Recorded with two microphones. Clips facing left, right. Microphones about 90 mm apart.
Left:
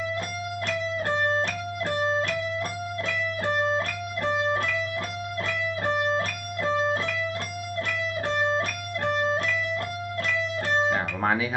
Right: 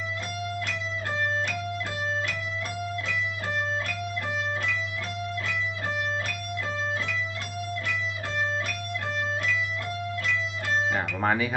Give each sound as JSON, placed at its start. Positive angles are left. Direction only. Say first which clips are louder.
{"t": 3.1, "sound": "music", "louder": "left 3 dB", "side_deg": 40}
{"t": 6.1, "sound": "music", "louder": "left 4 dB", "side_deg": 45}
{"t": 8.5, "sound": "music", "louder": "left 3 dB", "side_deg": 45}
{"t": 11.2, "sound": "speech", "louder": "right 2 dB", "side_deg": 0}